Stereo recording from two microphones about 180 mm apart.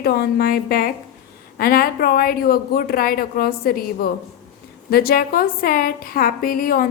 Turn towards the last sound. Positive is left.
turn(degrees=50)  # may be behind; listen again after turning